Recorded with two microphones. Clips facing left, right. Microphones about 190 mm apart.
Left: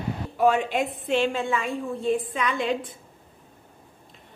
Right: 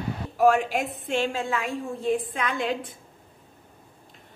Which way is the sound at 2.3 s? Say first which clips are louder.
Left 2 dB; 50° right (ahead or behind).